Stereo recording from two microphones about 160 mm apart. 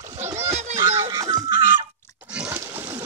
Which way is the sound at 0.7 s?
20° right (ahead or behind).